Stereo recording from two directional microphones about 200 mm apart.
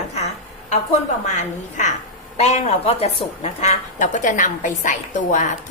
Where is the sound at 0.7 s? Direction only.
35° left (ahead or behind).